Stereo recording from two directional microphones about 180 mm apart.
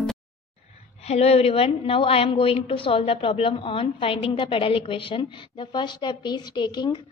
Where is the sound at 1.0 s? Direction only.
35° left (ahead or behind).